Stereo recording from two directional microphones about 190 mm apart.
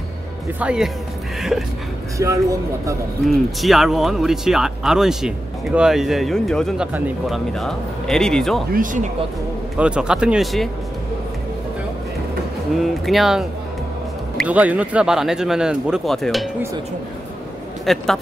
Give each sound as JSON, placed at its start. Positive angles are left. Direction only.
{"t": 0.6, "sound": "speech", "side_deg": -5}
{"t": 2.1, "sound": "speech", "side_deg": -15}
{"t": 3.3, "sound": "speech", "side_deg": 0}
{"t": 8.7, "sound": "speech", "side_deg": -40}
{"t": 9.8, "sound": "speech", "side_deg": -5}
{"t": 12.7, "sound": "speech", "side_deg": 0}
{"t": 17.8, "sound": "a man's voice", "side_deg": 0}